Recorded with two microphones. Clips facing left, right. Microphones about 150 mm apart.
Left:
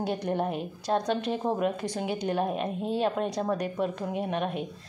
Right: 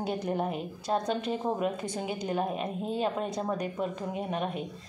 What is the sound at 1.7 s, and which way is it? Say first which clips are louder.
Speech: left 2 dB; 60° left (ahead or behind).